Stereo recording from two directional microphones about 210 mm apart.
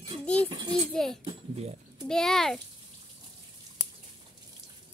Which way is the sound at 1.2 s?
25° right (ahead or behind).